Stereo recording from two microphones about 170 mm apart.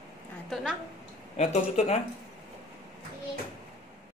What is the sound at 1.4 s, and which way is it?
Speech, 40° left (ahead or behind).